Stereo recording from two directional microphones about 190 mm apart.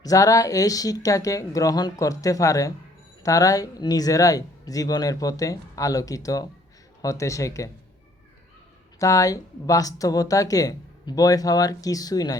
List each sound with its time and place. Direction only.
0.0 s speech: 15° left (ahead or behind)
9.0 s speech: 15° left (ahead or behind)